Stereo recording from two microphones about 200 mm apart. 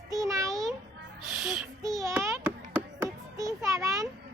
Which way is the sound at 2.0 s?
15° right (ahead or behind).